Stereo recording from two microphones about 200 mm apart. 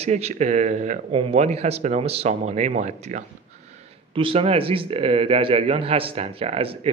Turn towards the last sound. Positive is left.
turn(degrees=-30)  # may be behind; listen again after turning